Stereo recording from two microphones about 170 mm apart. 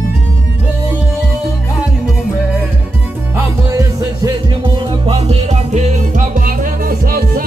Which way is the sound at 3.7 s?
20° right (ahead or behind).